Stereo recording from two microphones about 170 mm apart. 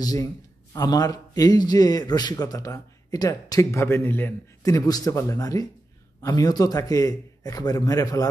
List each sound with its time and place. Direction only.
0.0 s a man's voice: 20° left (ahead or behind)